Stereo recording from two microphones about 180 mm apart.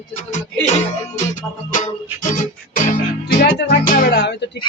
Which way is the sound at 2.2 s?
45° left (ahead or behind).